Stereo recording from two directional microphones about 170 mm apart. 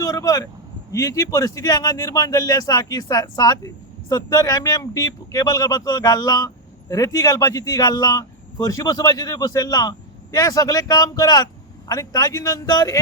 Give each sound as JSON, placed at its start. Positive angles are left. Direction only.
{"t": 0.0, "sound": "vehicle", "side_deg": 20}
{"t": 0.9, "sound": "speech", "side_deg": 20}